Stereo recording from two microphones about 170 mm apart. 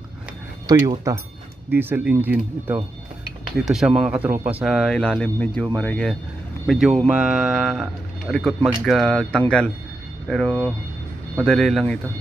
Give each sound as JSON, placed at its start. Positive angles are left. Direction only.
{"t": 0.7, "sound": "speech", "side_deg": -20}